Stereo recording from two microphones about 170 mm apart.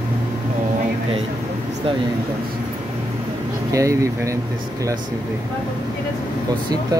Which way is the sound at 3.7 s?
20° right (ahead or behind).